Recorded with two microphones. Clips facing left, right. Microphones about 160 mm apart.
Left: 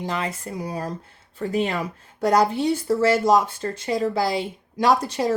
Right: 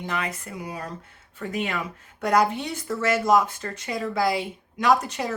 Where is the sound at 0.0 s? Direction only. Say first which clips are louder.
Left 3 dB; 30° left (ahead or behind).